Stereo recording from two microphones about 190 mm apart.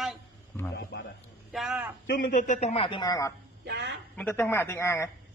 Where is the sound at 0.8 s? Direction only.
60° left (ahead or behind).